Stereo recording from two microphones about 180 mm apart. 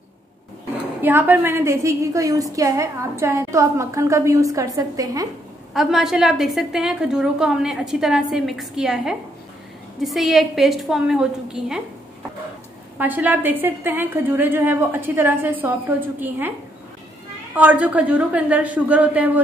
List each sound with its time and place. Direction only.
1.0 s a woman's voice: 10° right (ahead or behind)
5.7 s a woman's voice: centre (ahead or behind)
12.9 s a woman's voice: 10° right (ahead or behind)
17.6 s a woman's voice: 10° right (ahead or behind)